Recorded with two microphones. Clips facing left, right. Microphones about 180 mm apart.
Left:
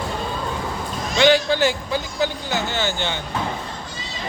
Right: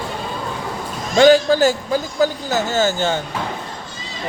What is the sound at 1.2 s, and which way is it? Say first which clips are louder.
Speech: right 5 dB; 40° right (ahead or behind).